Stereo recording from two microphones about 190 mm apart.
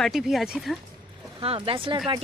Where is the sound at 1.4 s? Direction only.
30° right (ahead or behind).